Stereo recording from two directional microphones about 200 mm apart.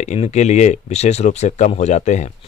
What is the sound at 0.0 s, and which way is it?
Speech, 35° left (ahead or behind).